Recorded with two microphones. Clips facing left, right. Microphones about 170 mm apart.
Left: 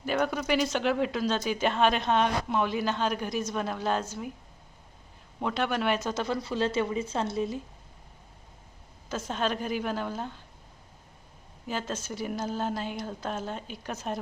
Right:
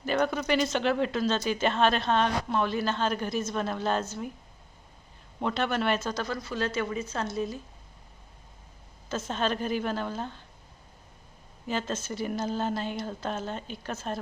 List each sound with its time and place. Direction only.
0.0 s speech: 5° left (ahead or behind)
5.4 s speech: 10° left (ahead or behind); by 7.6 s 25° left (ahead or behind)
9.0 s speech: 10° left (ahead or behind)
11.7 s speech: 10° left (ahead or behind)